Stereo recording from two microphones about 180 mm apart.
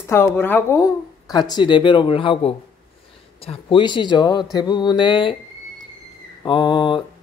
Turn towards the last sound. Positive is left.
turn(degrees=25)  # may be behind; listen again after turning